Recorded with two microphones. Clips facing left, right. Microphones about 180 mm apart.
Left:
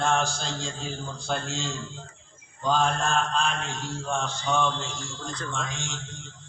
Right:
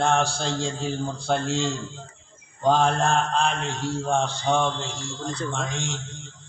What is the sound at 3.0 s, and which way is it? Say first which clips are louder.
A man's voice: right 4 dB; 60° right (ahead or behind).